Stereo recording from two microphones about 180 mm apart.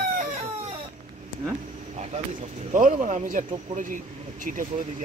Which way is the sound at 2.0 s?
40° right (ahead or behind).